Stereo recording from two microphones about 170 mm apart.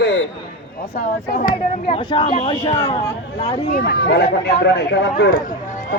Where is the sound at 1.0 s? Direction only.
45° left (ahead or behind).